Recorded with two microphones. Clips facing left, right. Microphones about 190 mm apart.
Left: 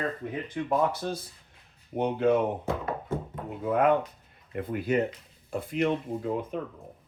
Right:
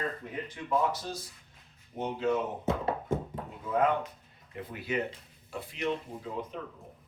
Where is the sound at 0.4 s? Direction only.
55° left (ahead or behind).